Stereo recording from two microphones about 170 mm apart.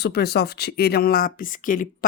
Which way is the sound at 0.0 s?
70° left (ahead or behind).